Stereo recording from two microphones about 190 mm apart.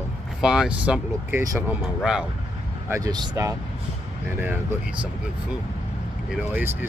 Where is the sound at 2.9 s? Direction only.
20° right (ahead or behind).